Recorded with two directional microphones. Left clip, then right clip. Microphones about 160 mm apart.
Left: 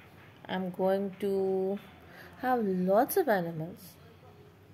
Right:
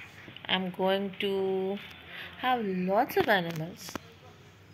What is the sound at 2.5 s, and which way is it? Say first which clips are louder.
Speech: left 2 dB; 60° left (ahead or behind).